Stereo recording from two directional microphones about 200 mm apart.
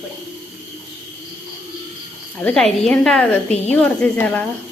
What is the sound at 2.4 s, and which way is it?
A woman's voice, 5° left (ahead or behind).